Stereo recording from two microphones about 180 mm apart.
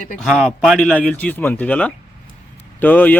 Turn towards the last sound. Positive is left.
turn(degrees=10)  # may be behind; listen again after turning